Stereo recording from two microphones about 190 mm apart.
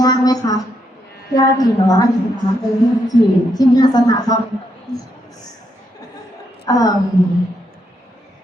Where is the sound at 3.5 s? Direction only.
20° left (ahead or behind).